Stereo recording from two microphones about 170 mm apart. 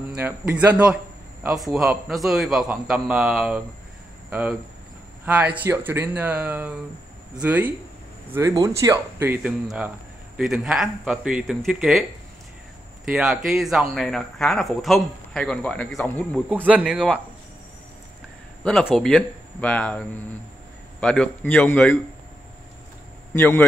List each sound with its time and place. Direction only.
0.2 s speech: 10° right (ahead or behind)
13.0 s speech: 5° right (ahead or behind)
16.4 s speech: 10° right (ahead or behind)
18.6 s speech: 5° left (ahead or behind)
23.3 s speech: 10° left (ahead or behind)